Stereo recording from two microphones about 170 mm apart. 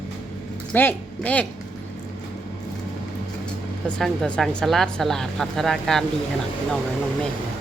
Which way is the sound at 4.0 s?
5° left (ahead or behind).